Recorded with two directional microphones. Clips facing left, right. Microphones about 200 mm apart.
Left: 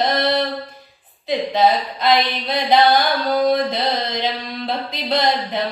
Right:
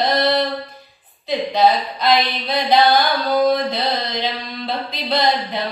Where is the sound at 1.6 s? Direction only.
20° left (ahead or behind).